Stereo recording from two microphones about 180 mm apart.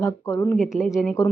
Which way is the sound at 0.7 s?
Centre (ahead or behind).